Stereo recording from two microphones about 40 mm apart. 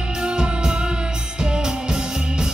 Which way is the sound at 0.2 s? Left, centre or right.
Right.